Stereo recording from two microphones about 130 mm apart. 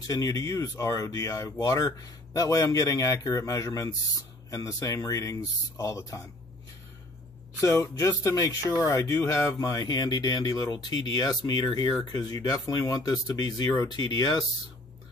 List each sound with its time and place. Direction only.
0.0 s speech: 30° left (ahead or behind)
7.6 s speech: 20° left (ahead or behind)